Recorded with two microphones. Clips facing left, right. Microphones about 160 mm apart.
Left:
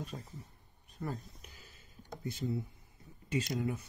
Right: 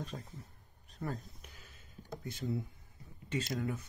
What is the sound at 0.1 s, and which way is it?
Speech, 10° left (ahead or behind).